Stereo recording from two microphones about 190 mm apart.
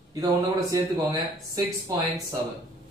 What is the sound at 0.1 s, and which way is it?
A man's voice, 20° right (ahead or behind).